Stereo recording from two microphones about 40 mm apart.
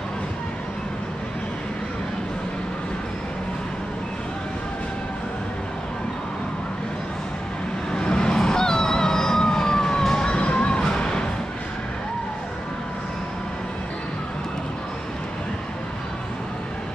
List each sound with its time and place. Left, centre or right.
7.9 s vehicle: centre
10.8 s music: centre